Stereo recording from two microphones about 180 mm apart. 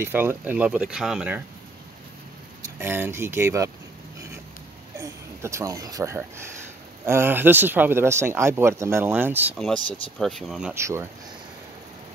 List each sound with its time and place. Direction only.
0.0 s speech: 10° right (ahead or behind)
2.8 s speech: 10° right (ahead or behind)
4.9 s speech: 15° right (ahead or behind)
10.1 s speech: centre (ahead or behind)
10.7 s speech: 15° right (ahead or behind)